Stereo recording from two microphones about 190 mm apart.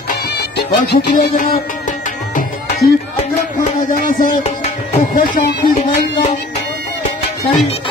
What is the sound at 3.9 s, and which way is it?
Speech, 45° left (ahead or behind).